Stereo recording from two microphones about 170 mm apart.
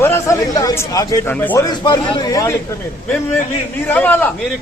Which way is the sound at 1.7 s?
25° left (ahead or behind).